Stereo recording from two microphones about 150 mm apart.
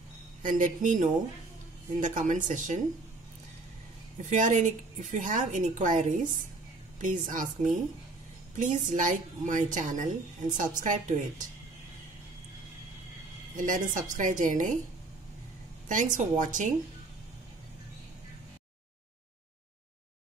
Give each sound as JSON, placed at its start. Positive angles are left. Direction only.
{"t": 0.4, "sound": "a woman's voice", "side_deg": -60}
{"t": 4.2, "sound": "a woman's voice", "side_deg": -55}
{"t": 13.6, "sound": "a woman's voice", "side_deg": -60}
{"t": 15.9, "sound": "a woman's voice", "side_deg": -55}